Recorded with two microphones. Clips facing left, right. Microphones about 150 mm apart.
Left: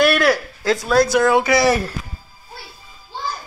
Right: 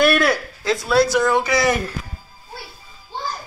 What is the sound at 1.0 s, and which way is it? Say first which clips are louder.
Speech: left 3 dB; 5° left (ahead or behind).